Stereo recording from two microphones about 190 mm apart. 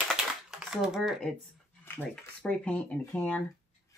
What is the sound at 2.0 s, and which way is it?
Speech, 5° left (ahead or behind).